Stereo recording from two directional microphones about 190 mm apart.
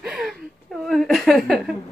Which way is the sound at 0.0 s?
5° right (ahead or behind).